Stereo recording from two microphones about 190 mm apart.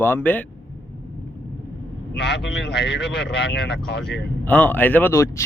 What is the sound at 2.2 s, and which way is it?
Speech, 65° left (ahead or behind).